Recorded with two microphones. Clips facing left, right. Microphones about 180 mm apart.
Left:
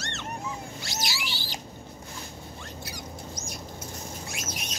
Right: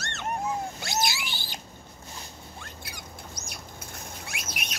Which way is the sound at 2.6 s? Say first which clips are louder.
Left 4 dB; 55° right (ahead or behind).